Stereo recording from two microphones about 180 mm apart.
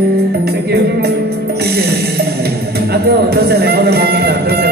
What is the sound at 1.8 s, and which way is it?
Music, 60° right (ahead or behind).